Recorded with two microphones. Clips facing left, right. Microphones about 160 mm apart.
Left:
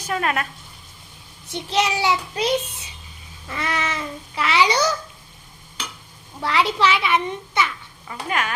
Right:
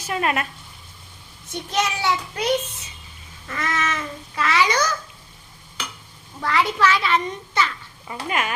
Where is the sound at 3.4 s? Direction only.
15° left (ahead or behind).